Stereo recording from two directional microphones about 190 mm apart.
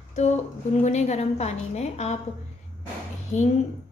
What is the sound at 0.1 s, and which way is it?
A woman's voice, 35° left (ahead or behind).